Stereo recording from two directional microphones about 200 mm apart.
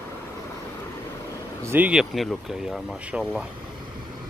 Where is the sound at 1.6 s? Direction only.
10° right (ahead or behind).